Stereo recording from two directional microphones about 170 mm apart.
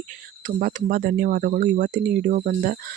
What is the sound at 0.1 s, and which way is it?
Speech, 50° right (ahead or behind).